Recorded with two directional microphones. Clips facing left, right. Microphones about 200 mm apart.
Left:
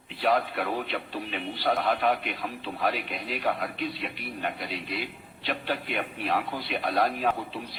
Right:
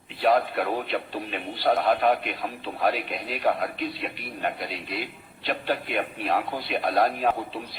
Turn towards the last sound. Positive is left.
turn(degrees=-45)  # may be behind; listen again after turning